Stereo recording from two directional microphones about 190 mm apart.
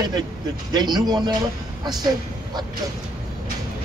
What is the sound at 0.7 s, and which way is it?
Speech, 20° right (ahead or behind).